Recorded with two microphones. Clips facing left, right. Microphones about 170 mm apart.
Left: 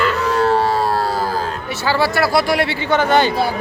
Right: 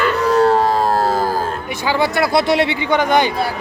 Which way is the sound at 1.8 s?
15° right (ahead or behind).